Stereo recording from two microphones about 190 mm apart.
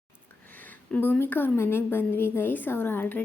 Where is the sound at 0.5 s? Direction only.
10° left (ahead or behind).